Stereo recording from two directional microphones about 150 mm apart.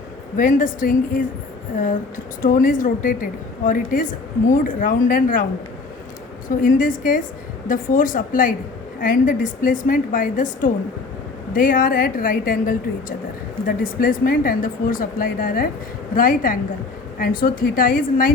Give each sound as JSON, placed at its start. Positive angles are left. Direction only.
{"t": 0.3, "sound": "a woman's voice", "side_deg": 60}
{"t": 6.6, "sound": "a woman's voice", "side_deg": 65}